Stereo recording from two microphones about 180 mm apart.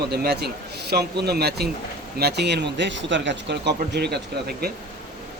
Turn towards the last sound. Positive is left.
turn(degrees=-60)  # may be behind; listen again after turning